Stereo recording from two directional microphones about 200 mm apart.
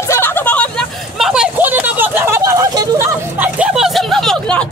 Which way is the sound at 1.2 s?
5° right (ahead or behind).